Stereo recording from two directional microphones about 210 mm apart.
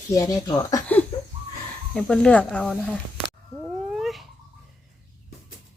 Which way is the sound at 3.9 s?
Centre (ahead or behind).